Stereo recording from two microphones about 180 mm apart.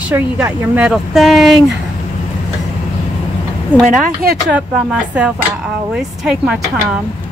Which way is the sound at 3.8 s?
55° right (ahead or behind).